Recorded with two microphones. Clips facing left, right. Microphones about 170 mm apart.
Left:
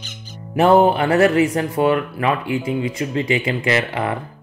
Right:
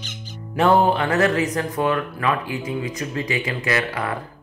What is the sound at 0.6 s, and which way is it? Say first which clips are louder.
Speech: left 4 dB; 25° left (ahead or behind).